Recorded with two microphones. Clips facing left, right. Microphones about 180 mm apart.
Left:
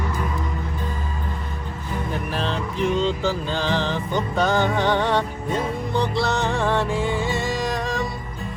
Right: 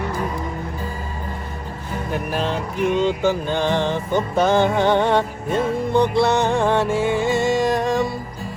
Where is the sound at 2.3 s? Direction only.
15° right (ahead or behind).